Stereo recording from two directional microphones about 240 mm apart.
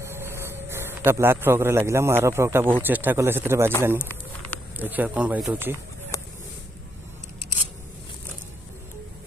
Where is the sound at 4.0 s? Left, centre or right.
Centre.